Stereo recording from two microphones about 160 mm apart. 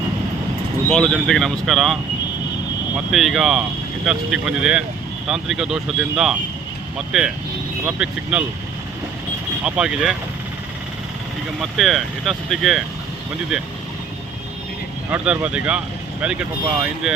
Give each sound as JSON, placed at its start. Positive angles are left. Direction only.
{"t": 0.9, "sound": "speech", "side_deg": 5}
{"t": 3.1, "sound": "speech", "side_deg": 0}
{"t": 9.6, "sound": "speech", "side_deg": -5}
{"t": 11.6, "sound": "speech", "side_deg": 0}
{"t": 15.1, "sound": "speech", "side_deg": -5}